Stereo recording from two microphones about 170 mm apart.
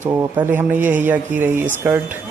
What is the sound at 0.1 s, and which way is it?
Speech, 20° right (ahead or behind).